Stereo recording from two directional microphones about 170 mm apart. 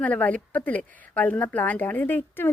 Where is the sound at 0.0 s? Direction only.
10° left (ahead or behind).